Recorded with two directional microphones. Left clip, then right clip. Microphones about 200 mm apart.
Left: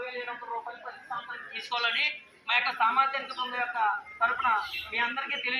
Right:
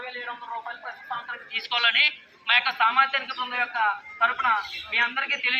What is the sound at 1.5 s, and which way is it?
A man's voice, centre (ahead or behind).